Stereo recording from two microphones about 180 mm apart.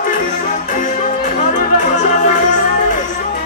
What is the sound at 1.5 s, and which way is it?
Music, 45° left (ahead or behind).